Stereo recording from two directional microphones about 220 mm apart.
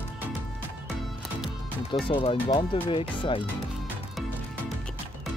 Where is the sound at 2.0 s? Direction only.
25° left (ahead or behind).